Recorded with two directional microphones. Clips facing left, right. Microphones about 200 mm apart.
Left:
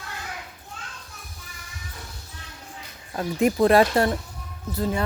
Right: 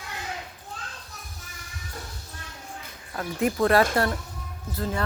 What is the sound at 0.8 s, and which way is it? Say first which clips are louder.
Children playing: left 1 dB; 35° right (ahead or behind).